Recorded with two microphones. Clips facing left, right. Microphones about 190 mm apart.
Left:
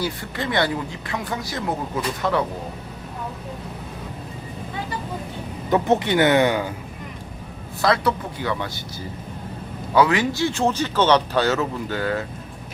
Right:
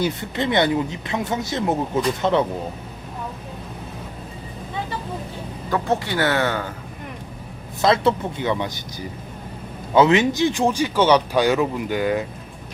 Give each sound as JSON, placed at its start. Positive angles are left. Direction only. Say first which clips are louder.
{"t": 0.0, "sound": "speech", "louder": "right 4 dB", "side_deg": -20}
{"t": 5.7, "sound": "speech", "louder": "left 4 dB", "side_deg": 20}
{"t": 7.8, "sound": "speech", "louder": "right 3 dB", "side_deg": -20}